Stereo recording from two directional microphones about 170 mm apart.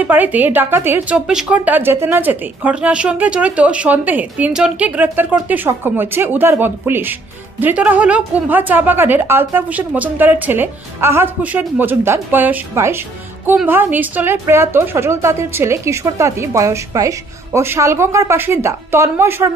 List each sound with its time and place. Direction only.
0.0 s a woman's voice: 10° right (ahead or behind)